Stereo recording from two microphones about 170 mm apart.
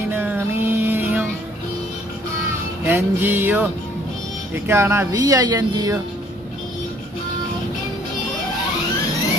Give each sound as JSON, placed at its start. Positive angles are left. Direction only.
{"t": 0.1, "sound": "music", "side_deg": -10}
{"t": 2.8, "sound": "music", "side_deg": -10}
{"t": 4.6, "sound": "speech", "side_deg": -15}